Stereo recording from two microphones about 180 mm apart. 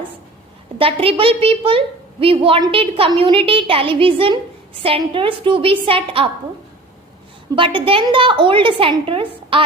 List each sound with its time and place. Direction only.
0.8 s a woman's voice: 30° right (ahead or behind)
7.5 s a woman's voice: 25° right (ahead or behind)